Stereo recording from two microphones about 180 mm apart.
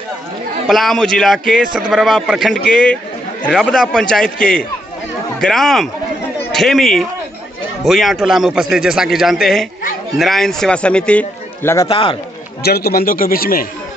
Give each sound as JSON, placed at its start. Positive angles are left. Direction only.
{"t": 0.7, "sound": "a man's voice", "side_deg": 0}
{"t": 11.9, "sound": "a man's voice", "side_deg": 30}
{"t": 12.6, "sound": "a man's voice", "side_deg": 60}